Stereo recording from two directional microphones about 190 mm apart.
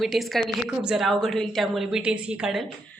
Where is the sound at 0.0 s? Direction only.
Centre (ahead or behind).